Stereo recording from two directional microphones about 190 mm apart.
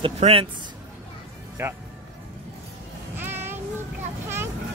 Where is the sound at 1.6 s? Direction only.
15° right (ahead or behind).